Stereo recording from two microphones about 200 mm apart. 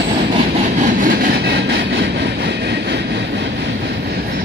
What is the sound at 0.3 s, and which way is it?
Train, 35° right (ahead or behind).